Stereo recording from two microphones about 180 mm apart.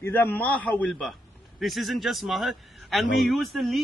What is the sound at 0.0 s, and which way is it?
A man's voice, 10° left (ahead or behind).